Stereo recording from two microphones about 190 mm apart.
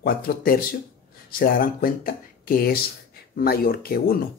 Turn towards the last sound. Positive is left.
turn(degrees=50)  # may be behind; listen again after turning